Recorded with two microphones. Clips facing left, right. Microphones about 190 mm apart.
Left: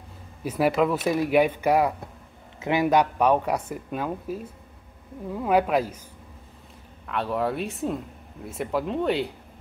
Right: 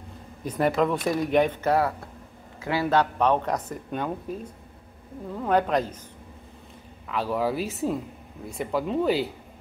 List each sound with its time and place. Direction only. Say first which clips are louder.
0.4 s speech: left 1 dB; 5° left (ahead or behind)
7.1 s speech: even; centre (ahead or behind)